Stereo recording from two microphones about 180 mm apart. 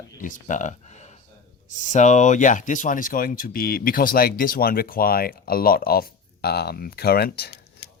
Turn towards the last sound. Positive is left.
turn(degrees=60)  # may be behind; listen again after turning